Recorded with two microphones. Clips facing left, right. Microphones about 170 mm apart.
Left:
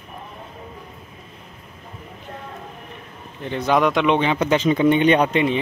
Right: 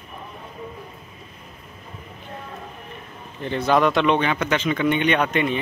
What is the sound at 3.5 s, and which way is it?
Speech, 10° left (ahead or behind).